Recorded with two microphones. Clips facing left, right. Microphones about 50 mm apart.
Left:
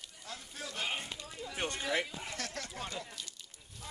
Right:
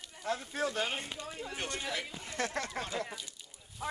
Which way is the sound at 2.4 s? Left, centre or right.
Right.